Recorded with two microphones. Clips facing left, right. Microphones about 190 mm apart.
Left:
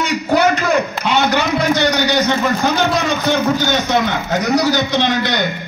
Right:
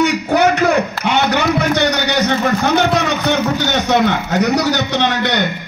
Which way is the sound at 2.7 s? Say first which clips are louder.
Right 2 dB; 65° right (ahead or behind).